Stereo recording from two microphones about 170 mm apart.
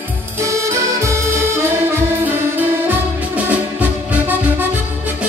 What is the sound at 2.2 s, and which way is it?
Music, 10° right (ahead or behind).